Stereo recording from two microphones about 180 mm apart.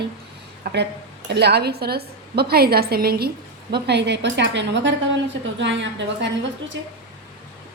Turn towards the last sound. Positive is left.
turn(degrees=-85)